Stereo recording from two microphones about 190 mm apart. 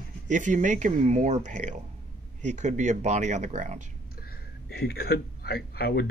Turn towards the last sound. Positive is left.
turn(degrees=55)  # may be behind; listen again after turning